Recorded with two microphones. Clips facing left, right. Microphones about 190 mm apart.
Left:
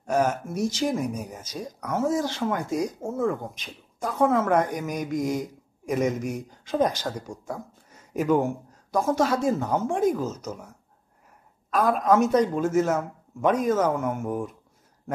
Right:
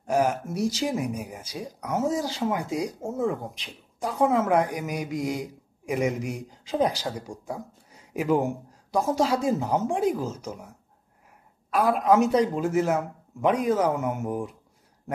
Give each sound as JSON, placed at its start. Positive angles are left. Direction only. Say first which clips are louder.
{"t": 0.0, "sound": "a sound", "louder": "even", "side_deg": -15}
{"t": 0.6, "sound": "speech", "louder": "left 1 dB", "side_deg": -35}
{"t": 0.8, "sound": "speech", "louder": "left 1 dB", "side_deg": -15}
{"t": 11.7, "sound": "speech", "louder": "even", "side_deg": -15}